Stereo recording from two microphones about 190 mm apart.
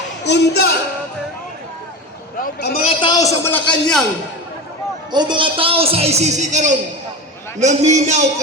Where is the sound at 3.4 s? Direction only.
10° left (ahead or behind).